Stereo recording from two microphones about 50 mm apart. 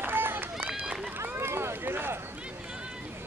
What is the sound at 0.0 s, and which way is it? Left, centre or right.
Run, right.